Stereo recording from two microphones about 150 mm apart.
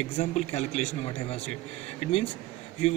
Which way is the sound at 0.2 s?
50° left (ahead or behind).